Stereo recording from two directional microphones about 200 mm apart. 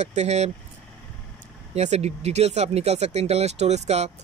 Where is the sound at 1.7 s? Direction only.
35° right (ahead or behind).